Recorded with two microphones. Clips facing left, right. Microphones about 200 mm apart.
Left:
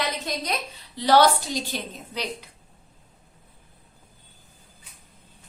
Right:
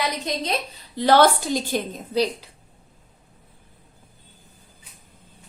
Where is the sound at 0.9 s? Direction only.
50° right (ahead or behind).